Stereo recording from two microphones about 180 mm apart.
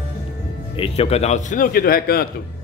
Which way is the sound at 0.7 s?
35° left (ahead or behind).